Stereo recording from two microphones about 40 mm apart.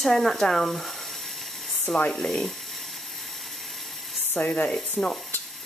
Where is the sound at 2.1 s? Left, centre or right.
Centre.